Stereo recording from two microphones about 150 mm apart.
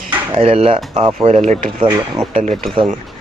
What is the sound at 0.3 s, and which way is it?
Speech, 40° right (ahead or behind).